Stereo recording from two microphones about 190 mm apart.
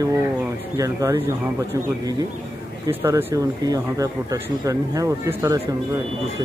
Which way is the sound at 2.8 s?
15° right (ahead or behind).